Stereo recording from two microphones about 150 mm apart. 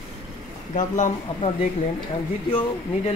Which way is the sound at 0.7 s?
55° left (ahead or behind).